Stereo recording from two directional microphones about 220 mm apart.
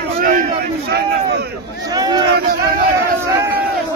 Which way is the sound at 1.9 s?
15° right (ahead or behind).